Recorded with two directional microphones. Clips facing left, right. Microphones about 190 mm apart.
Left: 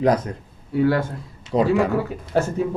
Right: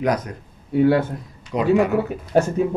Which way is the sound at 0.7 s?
20° right (ahead or behind).